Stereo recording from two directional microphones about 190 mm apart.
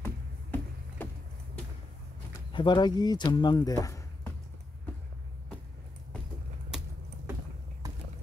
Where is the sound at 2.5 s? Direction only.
25° left (ahead or behind).